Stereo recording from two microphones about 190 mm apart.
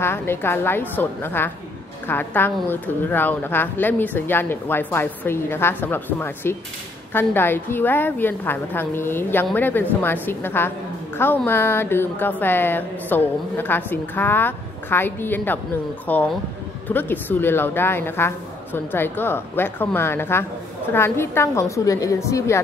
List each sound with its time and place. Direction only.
0.0 s a woman's voice: 10° left (ahead or behind)